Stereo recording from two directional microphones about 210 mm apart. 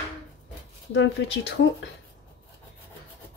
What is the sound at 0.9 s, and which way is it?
Speech, 60° left (ahead or behind).